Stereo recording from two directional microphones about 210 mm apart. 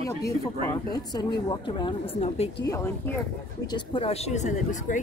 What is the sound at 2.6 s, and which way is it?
Speech, 15° left (ahead or behind).